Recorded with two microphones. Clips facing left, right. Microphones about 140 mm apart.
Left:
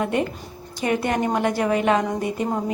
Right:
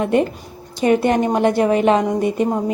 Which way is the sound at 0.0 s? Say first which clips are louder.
Right 6 dB; 30° right (ahead or behind).